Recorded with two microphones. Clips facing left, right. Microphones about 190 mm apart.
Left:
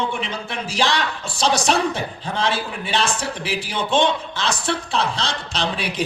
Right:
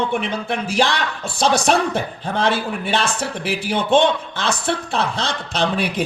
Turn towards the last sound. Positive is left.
turn(degrees=-55)  # may be behind; listen again after turning